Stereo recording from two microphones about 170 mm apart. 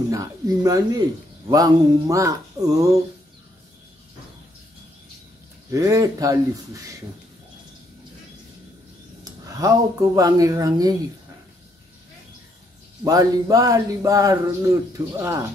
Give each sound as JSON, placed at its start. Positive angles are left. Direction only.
{"t": 0.1, "sound": "speech", "side_deg": -20}
{"t": 5.7, "sound": "speech", "side_deg": -15}
{"t": 9.5, "sound": "speech", "side_deg": -20}
{"t": 13.0, "sound": "speech", "side_deg": -20}